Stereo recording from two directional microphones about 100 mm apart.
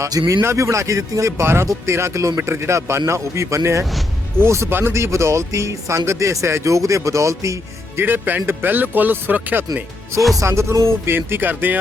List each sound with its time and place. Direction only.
0.0 s speech: 35° right (ahead or behind)
0.4 s speech: 30° right (ahead or behind)
8.0 s speech: 20° right (ahead or behind)
10.3 s speech: 30° right (ahead or behind)